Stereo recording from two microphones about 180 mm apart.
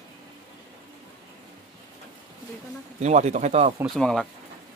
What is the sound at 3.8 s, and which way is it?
Speech, 5° left (ahead or behind).